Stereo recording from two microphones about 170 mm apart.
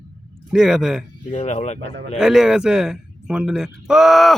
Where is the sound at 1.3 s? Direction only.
45° left (ahead or behind).